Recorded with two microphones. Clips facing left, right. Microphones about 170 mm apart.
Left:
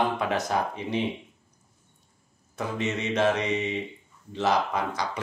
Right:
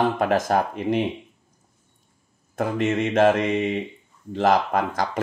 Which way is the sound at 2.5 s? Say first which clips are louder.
Right 7 dB; 50° right (ahead or behind).